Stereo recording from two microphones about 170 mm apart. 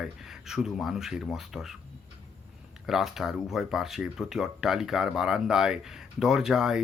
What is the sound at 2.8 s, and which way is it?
Speech, centre (ahead or behind).